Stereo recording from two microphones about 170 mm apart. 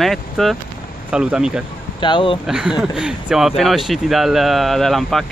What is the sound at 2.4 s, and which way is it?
Speech, 5° right (ahead or behind).